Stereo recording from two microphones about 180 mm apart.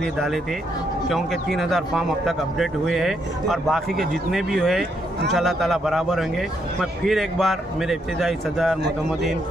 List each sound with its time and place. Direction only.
0.0 s speech: centre (ahead or behind)